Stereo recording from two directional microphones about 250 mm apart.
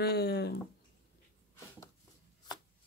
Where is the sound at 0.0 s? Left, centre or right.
Left.